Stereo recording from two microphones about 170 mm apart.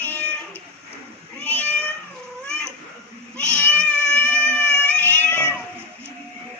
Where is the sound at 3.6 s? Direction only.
10° left (ahead or behind).